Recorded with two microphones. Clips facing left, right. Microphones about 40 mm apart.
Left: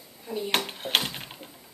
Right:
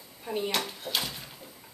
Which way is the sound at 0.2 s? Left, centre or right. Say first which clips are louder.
Right 1 dB; right.